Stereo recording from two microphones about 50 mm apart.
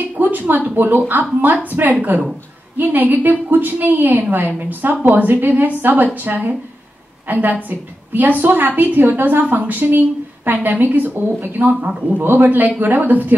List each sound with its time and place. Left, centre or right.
0.2 s a woman's voice: right
11.9 s a man's voice: right
12.2 s a woman's voice: right